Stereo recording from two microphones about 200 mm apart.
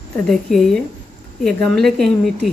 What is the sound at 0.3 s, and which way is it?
A woman's voice, centre (ahead or behind).